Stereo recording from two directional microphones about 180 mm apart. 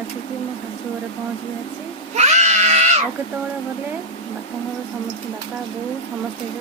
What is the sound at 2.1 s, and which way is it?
Baby cry, 40° right (ahead or behind).